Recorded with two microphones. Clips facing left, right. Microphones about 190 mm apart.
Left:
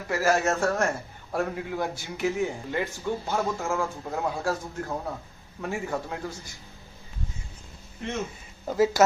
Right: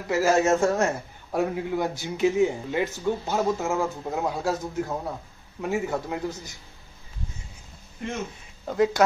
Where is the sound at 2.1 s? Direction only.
20° right (ahead or behind).